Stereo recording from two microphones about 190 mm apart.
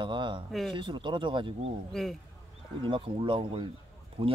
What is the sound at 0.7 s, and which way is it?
Speech, 25° right (ahead or behind).